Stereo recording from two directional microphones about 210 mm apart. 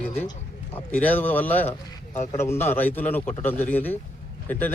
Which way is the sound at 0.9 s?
10° left (ahead or behind).